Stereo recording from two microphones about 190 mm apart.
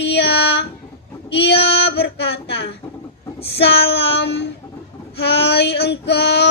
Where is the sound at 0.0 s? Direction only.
65° left (ahead or behind).